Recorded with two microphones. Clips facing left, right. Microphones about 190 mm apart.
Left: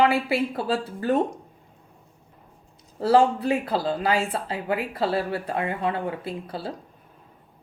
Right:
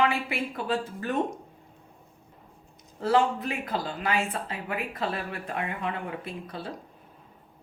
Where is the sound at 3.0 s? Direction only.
35° left (ahead or behind).